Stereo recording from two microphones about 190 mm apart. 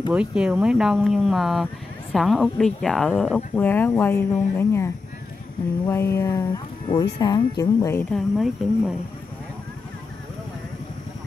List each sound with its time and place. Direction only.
0.1 s speech: 5° right (ahead or behind); by 8.0 s 15° left (ahead or behind)
8.1 s speech: centre (ahead or behind)